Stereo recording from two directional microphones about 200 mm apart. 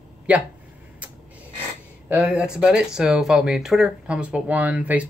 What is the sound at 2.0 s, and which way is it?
Speech, 5° right (ahead or behind).